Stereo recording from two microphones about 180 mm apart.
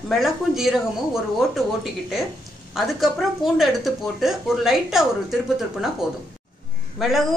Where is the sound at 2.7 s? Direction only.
Centre (ahead or behind).